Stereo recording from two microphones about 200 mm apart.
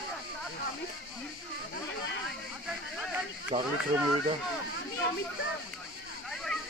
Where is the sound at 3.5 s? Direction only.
30° right (ahead or behind).